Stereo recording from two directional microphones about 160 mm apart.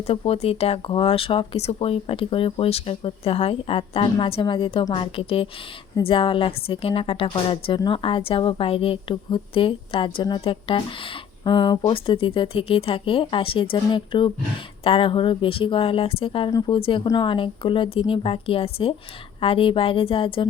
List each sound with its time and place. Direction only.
0.1 s a woman's voice: 40° left (ahead or behind)